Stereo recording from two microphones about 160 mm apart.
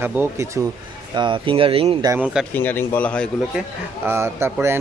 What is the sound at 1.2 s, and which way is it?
Speech, 30° right (ahead or behind).